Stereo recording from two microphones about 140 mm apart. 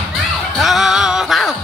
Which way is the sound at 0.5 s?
Centre (ahead or behind).